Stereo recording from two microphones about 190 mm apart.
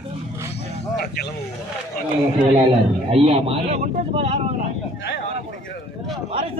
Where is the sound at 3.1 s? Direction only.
30° right (ahead or behind).